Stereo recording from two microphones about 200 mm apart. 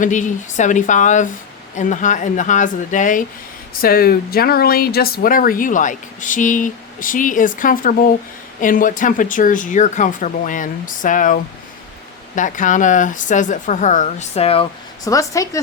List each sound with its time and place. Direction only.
0.0 s speech: 40° left (ahead or behind)
12.4 s speech: 40° left (ahead or behind)
15.0 s speech: 15° left (ahead or behind)